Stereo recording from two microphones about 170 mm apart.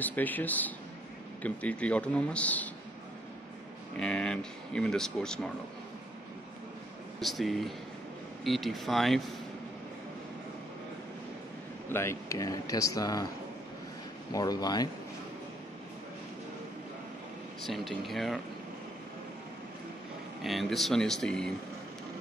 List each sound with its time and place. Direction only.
0.0 s a man's voice: 10° left (ahead or behind)
3.9 s speech: 5° left (ahead or behind)
7.2 s speech: centre (ahead or behind)
11.9 s speech: 15° left (ahead or behind)
14.3 s speech: 20° left (ahead or behind)
17.6 s speech: centre (ahead or behind)
20.4 s speech: centre (ahead or behind)